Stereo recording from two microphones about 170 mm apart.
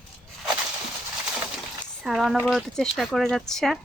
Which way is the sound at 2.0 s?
Centre (ahead or behind).